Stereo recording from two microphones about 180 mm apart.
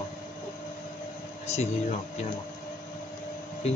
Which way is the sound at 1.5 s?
40° left (ahead or behind).